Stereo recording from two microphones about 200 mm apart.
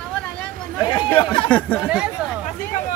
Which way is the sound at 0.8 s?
25° left (ahead or behind).